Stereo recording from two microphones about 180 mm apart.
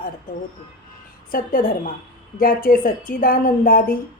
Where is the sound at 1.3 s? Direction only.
50° left (ahead or behind).